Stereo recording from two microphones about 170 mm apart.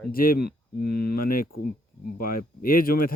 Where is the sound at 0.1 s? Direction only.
60° left (ahead or behind).